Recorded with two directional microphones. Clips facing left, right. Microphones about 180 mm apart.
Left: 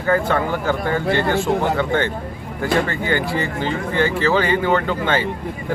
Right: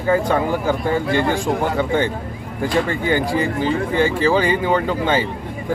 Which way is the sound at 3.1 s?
10° right (ahead or behind).